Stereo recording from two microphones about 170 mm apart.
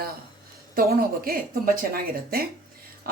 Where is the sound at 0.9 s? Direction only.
60° right (ahead or behind).